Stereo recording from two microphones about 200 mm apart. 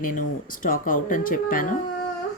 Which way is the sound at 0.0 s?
45° left (ahead or behind).